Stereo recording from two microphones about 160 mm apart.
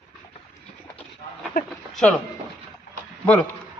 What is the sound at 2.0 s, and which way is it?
Speech, 10° left (ahead or behind).